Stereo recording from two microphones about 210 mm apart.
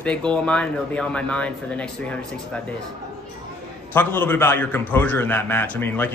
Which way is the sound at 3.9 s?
10° left (ahead or behind).